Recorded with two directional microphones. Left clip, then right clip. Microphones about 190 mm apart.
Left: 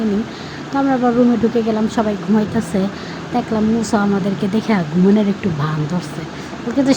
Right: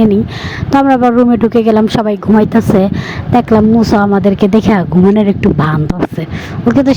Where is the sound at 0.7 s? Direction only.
55° right (ahead or behind).